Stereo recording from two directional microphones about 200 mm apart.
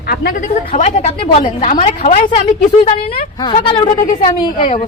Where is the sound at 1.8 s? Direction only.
40° left (ahead or behind).